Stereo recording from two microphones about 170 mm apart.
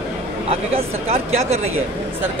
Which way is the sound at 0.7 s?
40° right (ahead or behind).